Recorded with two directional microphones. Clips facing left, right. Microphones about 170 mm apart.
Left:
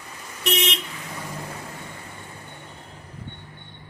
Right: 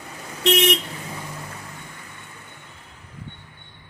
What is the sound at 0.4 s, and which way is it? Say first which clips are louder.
Vehicle: right 7 dB; 90° right.